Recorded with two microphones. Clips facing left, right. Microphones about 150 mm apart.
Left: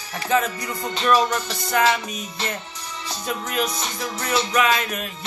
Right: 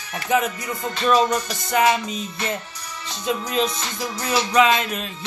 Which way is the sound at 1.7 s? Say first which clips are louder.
Right 2 dB; 20° right (ahead or behind).